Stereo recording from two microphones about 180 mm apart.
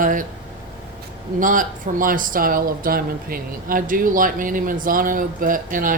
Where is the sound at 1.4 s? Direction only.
45° right (ahead or behind).